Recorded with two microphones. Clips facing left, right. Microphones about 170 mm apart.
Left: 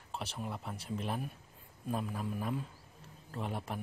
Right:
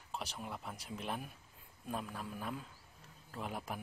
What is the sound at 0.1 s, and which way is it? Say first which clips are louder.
Speech: left 3 dB; centre (ahead or behind).